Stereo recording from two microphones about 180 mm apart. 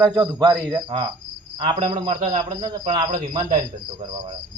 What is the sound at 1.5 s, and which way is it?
A man's voice, 30° right (ahead or behind).